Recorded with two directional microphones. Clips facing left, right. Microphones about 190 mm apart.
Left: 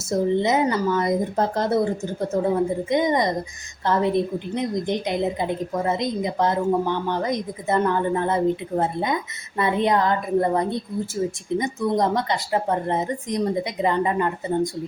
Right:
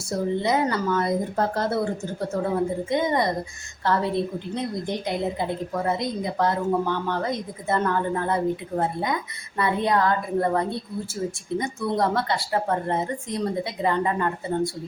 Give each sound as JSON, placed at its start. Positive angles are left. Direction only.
{"t": 0.0, "sound": "a woman's voice", "side_deg": 20}
{"t": 2.9, "sound": "a woman's voice", "side_deg": 20}